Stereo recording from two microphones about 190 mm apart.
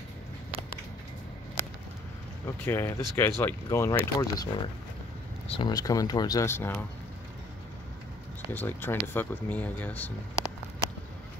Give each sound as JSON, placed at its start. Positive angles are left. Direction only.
{"t": 2.4, "sound": "speech", "side_deg": 10}
{"t": 8.5, "sound": "speech", "side_deg": 10}